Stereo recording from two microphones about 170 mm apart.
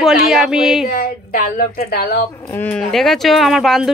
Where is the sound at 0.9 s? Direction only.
60° left (ahead or behind).